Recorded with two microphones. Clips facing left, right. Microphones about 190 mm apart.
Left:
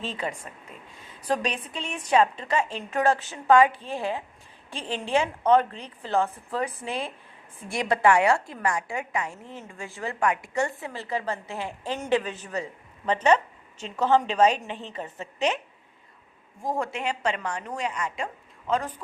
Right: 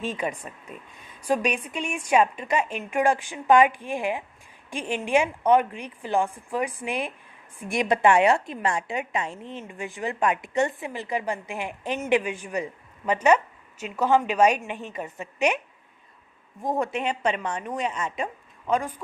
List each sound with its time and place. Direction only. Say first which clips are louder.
0.0 s a woman's voice: right 3 dB; 15° right (ahead or behind)
18.7 s a woman's voice: right 2 dB; 10° right (ahead or behind)